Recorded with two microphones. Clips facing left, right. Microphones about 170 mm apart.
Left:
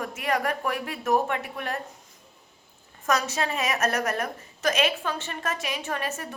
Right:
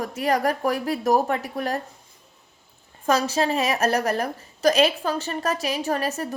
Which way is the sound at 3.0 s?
30° right (ahead or behind).